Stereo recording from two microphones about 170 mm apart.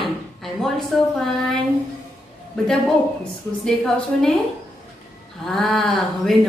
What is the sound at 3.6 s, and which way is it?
Speech, 5° left (ahead or behind).